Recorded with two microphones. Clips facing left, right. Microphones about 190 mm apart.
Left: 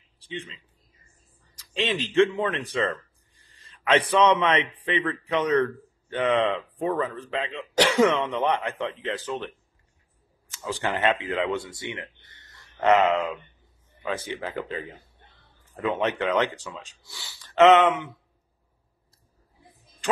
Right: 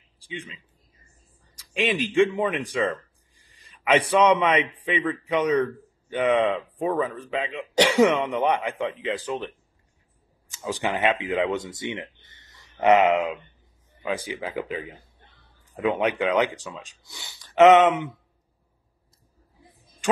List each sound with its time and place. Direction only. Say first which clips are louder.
0.2 s a man's voice: left 1 dB; 10° right (ahead or behind)
10.5 s speech: right 2 dB; 15° right (ahead or behind)